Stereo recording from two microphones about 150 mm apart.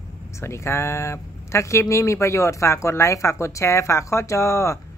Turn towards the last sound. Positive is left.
turn(degrees=20)  # may be behind; listen again after turning